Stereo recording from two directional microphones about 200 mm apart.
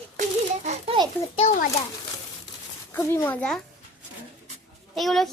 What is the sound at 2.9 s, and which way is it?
Speech, 10° left (ahead or behind).